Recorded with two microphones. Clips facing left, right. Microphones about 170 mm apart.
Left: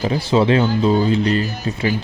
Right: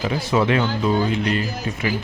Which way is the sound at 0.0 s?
30° left (ahead or behind).